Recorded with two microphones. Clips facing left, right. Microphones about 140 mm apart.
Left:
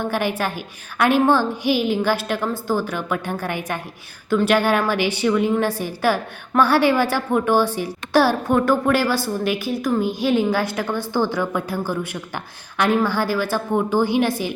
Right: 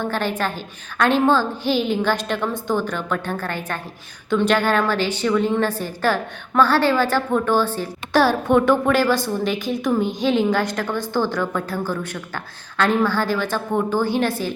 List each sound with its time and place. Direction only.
0.0 s a woman's voice: 15° left (ahead or behind)